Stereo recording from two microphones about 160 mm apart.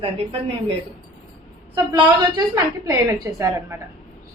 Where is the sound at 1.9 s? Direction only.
30° right (ahead or behind).